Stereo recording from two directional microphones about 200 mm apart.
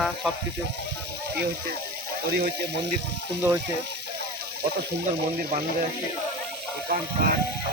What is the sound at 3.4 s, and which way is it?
Speech, 10° right (ahead or behind).